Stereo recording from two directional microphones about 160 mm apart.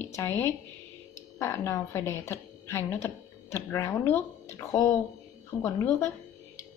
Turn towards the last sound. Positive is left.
turn(degrees=15)  # may be behind; listen again after turning